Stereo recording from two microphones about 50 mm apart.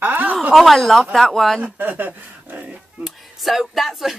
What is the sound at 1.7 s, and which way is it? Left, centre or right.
Speech, right.